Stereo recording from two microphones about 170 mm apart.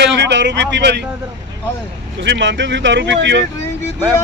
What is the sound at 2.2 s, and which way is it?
Speech, 90° right.